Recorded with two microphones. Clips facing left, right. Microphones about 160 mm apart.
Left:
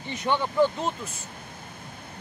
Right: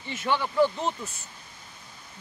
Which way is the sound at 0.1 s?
20° left (ahead or behind).